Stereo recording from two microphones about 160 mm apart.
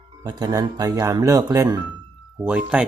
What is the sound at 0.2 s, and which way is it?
Speech, 25° right (ahead or behind).